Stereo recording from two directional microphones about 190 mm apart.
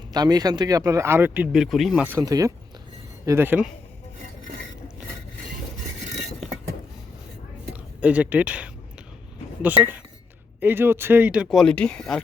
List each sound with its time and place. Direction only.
0.1 s speech: 20° right (ahead or behind); by 2.1 s 5° right (ahead or behind)
2.1 s speech: 20° right (ahead or behind)
6.4 s vehicle: centre (ahead or behind)
8.0 s speech: 5° right (ahead or behind)
10.6 s speech: 10° right (ahead or behind)